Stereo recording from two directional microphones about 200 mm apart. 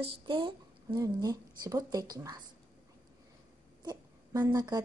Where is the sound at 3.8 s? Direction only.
20° right (ahead or behind).